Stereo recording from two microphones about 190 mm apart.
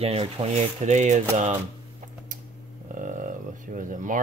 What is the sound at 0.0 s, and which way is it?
Speech, 30° right (ahead or behind).